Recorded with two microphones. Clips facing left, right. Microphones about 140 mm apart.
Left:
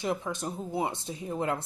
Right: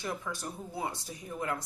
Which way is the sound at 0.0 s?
20° left (ahead or behind).